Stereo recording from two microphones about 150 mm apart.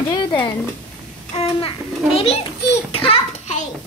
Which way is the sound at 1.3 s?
40° left (ahead or behind).